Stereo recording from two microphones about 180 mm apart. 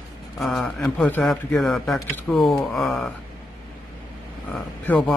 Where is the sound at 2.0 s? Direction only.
15° left (ahead or behind).